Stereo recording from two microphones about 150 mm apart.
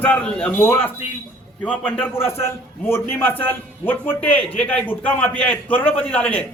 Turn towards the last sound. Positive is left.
turn(degrees=10)  # may be behind; listen again after turning